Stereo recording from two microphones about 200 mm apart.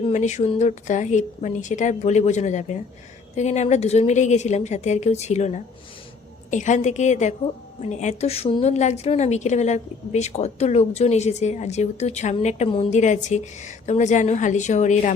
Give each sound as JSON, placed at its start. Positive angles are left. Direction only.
{"t": 0.1, "sound": "a woman's voice", "side_deg": 35}